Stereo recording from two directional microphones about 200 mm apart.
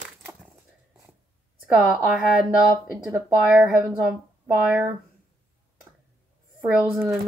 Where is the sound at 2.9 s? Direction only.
5° right (ahead or behind).